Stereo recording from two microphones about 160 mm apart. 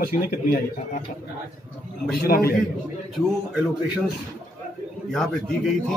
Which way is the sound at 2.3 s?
70° left (ahead or behind).